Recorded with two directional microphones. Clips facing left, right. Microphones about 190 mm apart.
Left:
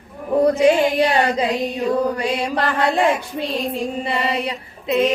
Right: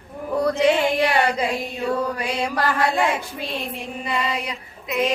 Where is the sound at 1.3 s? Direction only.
20° left (ahead or behind).